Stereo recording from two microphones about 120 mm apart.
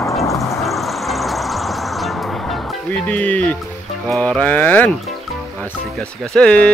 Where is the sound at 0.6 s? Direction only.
Centre (ahead or behind).